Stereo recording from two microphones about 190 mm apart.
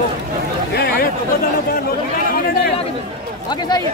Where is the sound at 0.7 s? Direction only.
55° left (ahead or behind).